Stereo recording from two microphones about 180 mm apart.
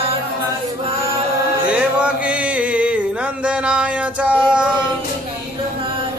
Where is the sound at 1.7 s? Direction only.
5° right (ahead or behind).